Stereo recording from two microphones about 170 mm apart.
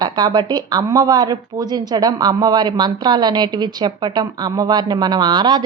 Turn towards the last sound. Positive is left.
turn(degrees=-25)  # may be behind; listen again after turning